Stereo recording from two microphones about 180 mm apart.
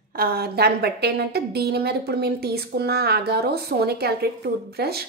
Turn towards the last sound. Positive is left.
turn(degrees=-60)  # may be behind; listen again after turning